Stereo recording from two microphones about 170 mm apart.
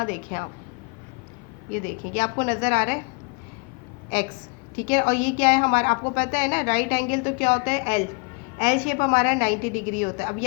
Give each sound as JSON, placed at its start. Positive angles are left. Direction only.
{"t": 0.0, "sound": "a woman's voice", "side_deg": 50}
{"t": 1.7, "sound": "a woman's voice", "side_deg": 50}
{"t": 4.1, "sound": "a woman's voice", "side_deg": 50}